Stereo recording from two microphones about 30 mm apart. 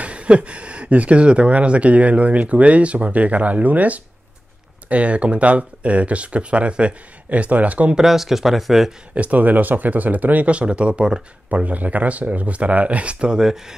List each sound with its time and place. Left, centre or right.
0.0 s speech: right
4.8 s speech: right
7.2 s speech: right
8.1 s speech: centre
9.1 s speech: right
10.5 s speech: right
11.5 s speech: right
13.3 s speech: centre